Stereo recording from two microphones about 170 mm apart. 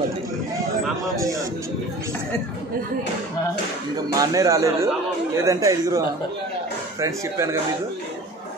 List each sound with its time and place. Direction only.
1.1 s speech: 20° right (ahead or behind)
4.1 s a man's voice: 20° right (ahead or behind)